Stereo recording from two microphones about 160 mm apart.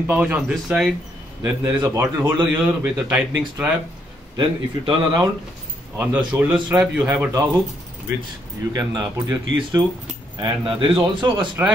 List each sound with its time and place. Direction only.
0.0 s a man's voice: 10° right (ahead or behind)
4.4 s speech: 30° right (ahead or behind)
5.9 s a man's voice: 10° right (ahead or behind)
8.7 s speech: 25° right (ahead or behind)
11.3 s a man's voice: 10° right (ahead or behind)